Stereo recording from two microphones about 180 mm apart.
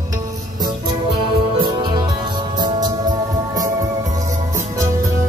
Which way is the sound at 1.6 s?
25° right (ahead or behind).